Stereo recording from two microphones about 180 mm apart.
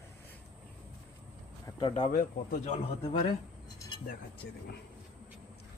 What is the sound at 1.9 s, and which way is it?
Speech, 45° left (ahead or behind).